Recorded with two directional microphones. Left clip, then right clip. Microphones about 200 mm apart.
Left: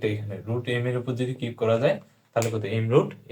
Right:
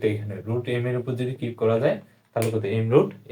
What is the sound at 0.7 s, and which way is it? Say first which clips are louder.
Speech: left 1 dB; 15° right (ahead or behind).